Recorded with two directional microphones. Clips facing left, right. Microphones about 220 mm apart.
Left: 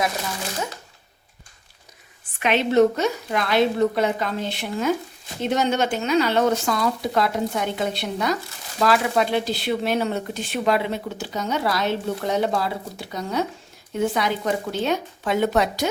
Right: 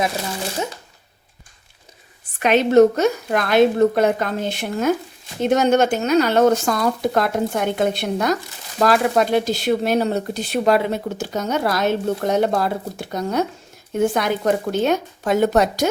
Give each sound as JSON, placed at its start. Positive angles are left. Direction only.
{"t": 2.4, "sound": "speech", "side_deg": -40}